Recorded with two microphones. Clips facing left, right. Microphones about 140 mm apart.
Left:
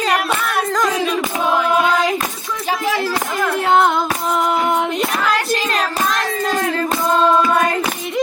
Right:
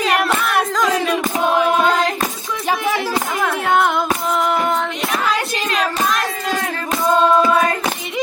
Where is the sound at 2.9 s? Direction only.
Centre (ahead or behind).